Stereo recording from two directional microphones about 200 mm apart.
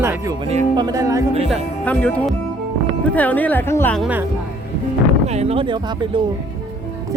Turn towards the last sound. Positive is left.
turn(degrees=-30)  # may be behind; listen again after turning